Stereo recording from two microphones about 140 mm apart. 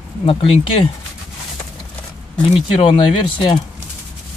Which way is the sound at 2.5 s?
40° left (ahead or behind).